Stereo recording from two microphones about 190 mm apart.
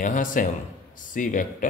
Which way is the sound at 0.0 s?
45° left (ahead or behind).